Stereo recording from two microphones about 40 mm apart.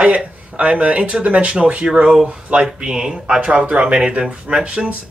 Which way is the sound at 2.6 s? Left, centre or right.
Centre.